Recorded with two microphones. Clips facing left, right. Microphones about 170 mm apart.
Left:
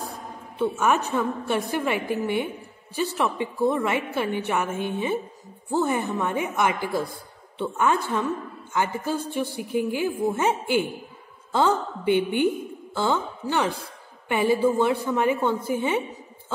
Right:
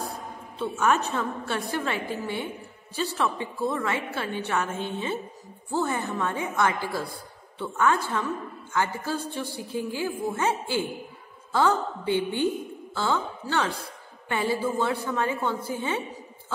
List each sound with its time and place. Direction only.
0.6 s a man's voice: 15° left (ahead or behind)